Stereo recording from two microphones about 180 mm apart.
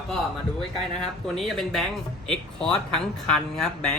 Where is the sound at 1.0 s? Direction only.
Centre (ahead or behind).